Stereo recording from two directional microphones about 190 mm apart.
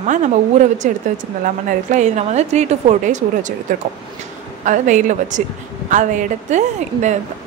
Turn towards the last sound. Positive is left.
turn(degrees=-40)  # may be behind; listen again after turning